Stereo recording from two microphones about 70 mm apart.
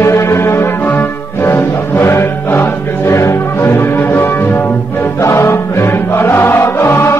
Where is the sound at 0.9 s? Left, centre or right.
Left.